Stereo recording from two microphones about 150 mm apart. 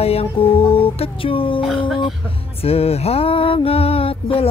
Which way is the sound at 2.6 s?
40° left (ahead or behind).